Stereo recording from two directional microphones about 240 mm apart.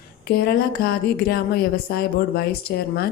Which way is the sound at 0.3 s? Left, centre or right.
Left.